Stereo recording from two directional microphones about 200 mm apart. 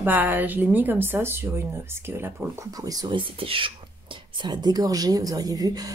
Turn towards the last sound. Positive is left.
turn(degrees=-20)  # may be behind; listen again after turning